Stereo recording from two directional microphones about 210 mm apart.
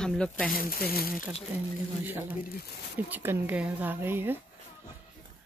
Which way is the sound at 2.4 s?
45° left (ahead or behind).